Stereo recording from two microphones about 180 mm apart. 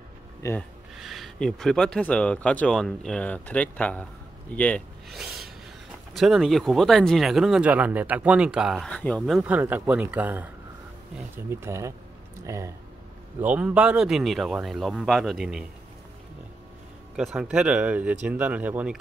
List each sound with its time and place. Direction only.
0.4 s speech: 15° left (ahead or behind)
0.9 s speech: centre (ahead or behind)
5.2 s a sound: centre (ahead or behind)
6.1 s speech: centre (ahead or behind)
8.9 s speech: 5° left (ahead or behind)
9.2 s speech: 5° right (ahead or behind)
17.1 s speech: 5° right (ahead or behind)